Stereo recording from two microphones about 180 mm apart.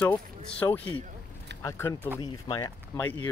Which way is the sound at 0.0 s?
10° left (ahead or behind).